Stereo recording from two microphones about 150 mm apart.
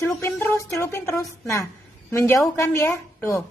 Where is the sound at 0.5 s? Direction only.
15° left (ahead or behind).